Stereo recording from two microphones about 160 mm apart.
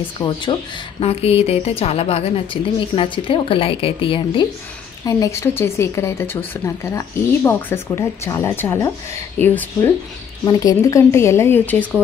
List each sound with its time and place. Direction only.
0.2 s a woman's voice: 30° left (ahead or behind)
5.0 s speech: 20° left (ahead or behind)
10.4 s speech: 25° left (ahead or behind)